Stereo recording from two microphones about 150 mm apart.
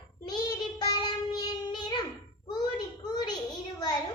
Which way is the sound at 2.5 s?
30° left (ahead or behind).